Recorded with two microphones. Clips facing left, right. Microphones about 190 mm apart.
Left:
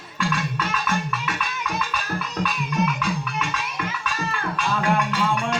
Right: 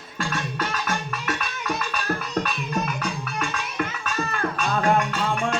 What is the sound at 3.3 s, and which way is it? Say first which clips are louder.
Music: right 1 dB; 50° right (ahead or behind).